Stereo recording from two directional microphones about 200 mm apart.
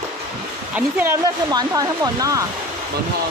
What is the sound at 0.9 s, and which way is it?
Speech, 15° right (ahead or behind).